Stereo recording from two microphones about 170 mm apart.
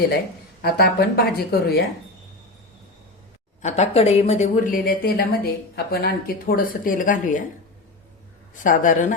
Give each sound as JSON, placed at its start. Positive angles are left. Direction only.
{"t": 0.6, "sound": "speech", "side_deg": 70}
{"t": 3.6, "sound": "speech", "side_deg": 40}
{"t": 8.5, "sound": "speech", "side_deg": 50}